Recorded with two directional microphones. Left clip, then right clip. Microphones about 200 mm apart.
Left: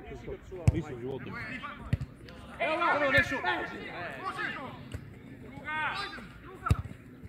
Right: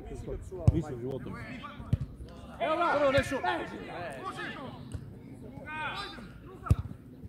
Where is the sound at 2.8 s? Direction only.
45° right (ahead or behind).